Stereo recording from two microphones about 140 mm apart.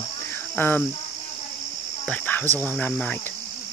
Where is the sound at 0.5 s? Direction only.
15° left (ahead or behind).